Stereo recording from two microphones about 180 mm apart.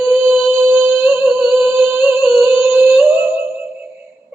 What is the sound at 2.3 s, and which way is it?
Humming, 15° right (ahead or behind).